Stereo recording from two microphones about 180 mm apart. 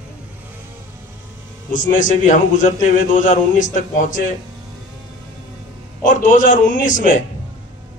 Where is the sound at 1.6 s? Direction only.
45° left (ahead or behind).